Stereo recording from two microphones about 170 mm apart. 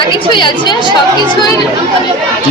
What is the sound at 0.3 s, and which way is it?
Speech, 30° left (ahead or behind).